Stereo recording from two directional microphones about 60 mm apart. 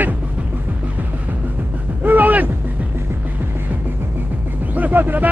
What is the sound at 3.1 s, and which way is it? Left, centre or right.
Music, right.